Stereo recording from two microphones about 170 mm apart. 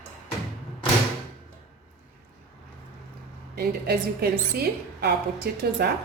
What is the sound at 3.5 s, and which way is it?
A woman's voice, 70° right (ahead or behind).